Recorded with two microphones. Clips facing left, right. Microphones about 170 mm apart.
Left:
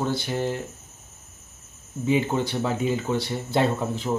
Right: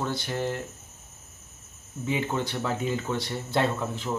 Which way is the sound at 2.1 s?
20° left (ahead or behind).